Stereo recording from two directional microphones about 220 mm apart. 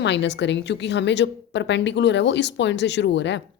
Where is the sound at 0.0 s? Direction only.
55° left (ahead or behind).